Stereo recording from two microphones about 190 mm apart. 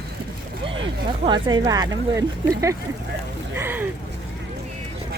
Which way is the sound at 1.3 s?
25° right (ahead or behind).